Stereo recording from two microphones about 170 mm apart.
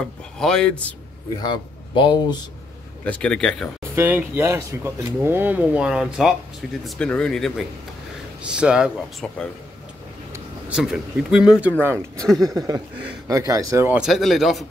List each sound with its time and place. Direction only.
0.0 s speech: 5° left (ahead or behind)
1.3 s speech: 25° left (ahead or behind)
3.1 s speech: 5° left (ahead or behind)
3.9 s speech: 10° right (ahead or behind)
10.7 s speech: 5° right (ahead or behind)
12.4 s speech: 20° right (ahead or behind); by 14.7 s centre (ahead or behind)